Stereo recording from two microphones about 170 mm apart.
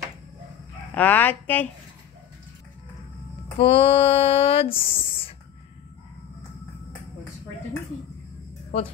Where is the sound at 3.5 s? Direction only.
35° left (ahead or behind).